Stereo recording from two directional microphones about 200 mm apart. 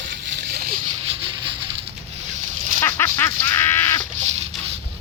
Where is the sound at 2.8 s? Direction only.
10° left (ahead or behind).